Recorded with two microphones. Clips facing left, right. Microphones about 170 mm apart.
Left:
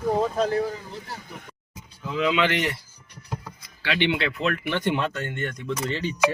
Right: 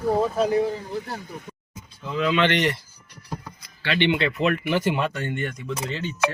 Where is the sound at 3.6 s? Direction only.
5° left (ahead or behind).